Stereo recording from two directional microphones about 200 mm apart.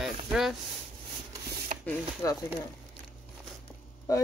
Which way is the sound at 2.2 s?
15° left (ahead or behind).